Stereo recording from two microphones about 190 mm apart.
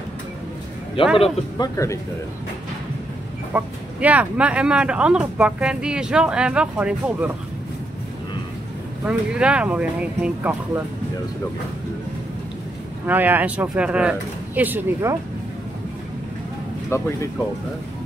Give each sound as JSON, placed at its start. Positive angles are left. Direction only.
{"t": 1.2, "sound": "speech", "side_deg": 20}
{"t": 3.5, "sound": "speech", "side_deg": -5}
{"t": 9.0, "sound": "speech", "side_deg": -5}
{"t": 13.0, "sound": "speech", "side_deg": -10}
{"t": 16.9, "sound": "speech", "side_deg": 15}